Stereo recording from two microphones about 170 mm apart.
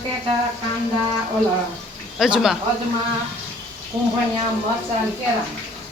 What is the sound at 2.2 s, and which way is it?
Speech, 5° right (ahead or behind).